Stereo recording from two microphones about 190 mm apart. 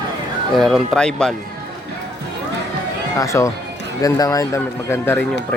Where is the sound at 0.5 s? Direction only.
Centre (ahead or behind).